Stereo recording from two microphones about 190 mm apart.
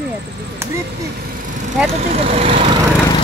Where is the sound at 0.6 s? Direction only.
15° right (ahead or behind).